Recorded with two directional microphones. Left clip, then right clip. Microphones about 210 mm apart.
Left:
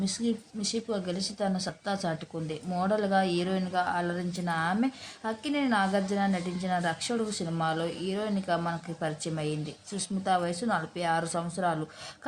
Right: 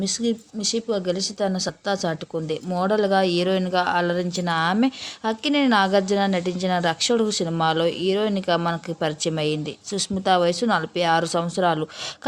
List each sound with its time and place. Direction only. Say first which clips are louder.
0.0 s speech: right 7 dB; 40° right (ahead or behind)